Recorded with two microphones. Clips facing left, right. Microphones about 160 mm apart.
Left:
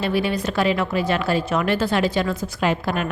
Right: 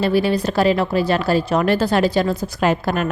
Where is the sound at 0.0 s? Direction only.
35° right (ahead or behind).